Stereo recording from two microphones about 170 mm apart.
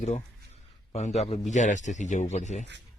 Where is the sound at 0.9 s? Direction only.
40° left (ahead or behind).